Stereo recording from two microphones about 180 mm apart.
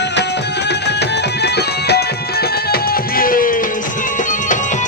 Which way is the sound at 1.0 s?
65° left (ahead or behind).